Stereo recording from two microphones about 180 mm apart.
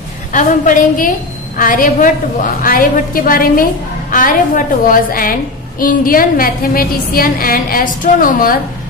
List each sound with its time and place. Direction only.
0.3 s a woman's voice: 45° left (ahead or behind)